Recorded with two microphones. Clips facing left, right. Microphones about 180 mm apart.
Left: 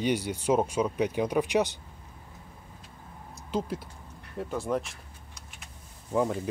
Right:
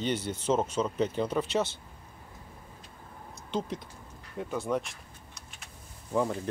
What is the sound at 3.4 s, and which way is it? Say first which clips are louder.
Speech: left 2 dB; 5° left (ahead or behind).